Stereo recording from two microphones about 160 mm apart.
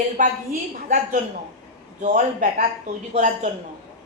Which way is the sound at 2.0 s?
50° right (ahead or behind).